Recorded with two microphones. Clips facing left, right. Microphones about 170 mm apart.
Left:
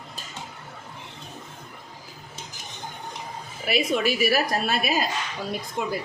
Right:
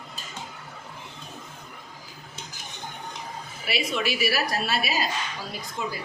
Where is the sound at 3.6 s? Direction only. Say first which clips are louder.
Left 5 dB; 45° left (ahead or behind).